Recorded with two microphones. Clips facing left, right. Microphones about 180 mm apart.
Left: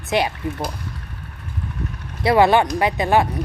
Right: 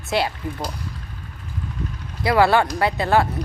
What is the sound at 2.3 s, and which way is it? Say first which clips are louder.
Speech: left 2 dB; 20° left (ahead or behind).